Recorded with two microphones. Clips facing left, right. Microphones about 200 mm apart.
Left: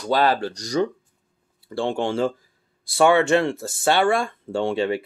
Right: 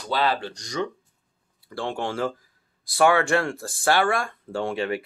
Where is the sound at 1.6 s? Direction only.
25° left (ahead or behind).